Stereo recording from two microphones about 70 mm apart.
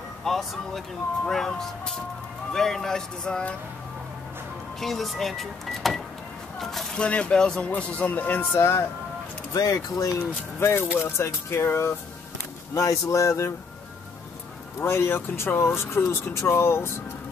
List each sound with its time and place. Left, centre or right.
0.2 s speech: centre
4.7 s speech: centre
7.0 s speech: centre
8.5 s speech: left
9.5 s speech: left
12.7 s speech: left
14.8 s speech: left